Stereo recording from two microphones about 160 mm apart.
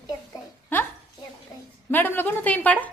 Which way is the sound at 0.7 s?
10° left (ahead or behind).